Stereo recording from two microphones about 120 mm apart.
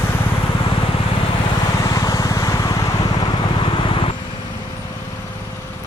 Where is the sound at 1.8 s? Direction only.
30° left (ahead or behind); by 4.1 s 45° left (ahead or behind).